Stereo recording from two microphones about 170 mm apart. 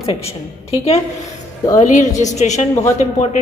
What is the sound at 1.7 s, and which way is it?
Speech, 45° left (ahead or behind).